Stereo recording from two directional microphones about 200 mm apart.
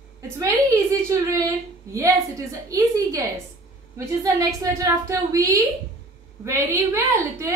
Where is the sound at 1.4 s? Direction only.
15° right (ahead or behind).